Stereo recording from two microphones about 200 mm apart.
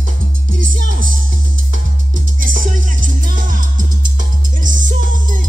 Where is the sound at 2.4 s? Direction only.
40° right (ahead or behind).